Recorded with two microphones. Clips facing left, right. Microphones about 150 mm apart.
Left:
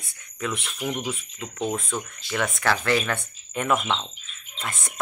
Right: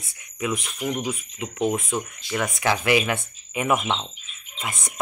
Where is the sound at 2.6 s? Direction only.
15° right (ahead or behind).